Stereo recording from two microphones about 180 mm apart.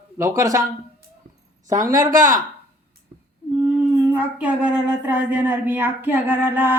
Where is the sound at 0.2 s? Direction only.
15° right (ahead or behind).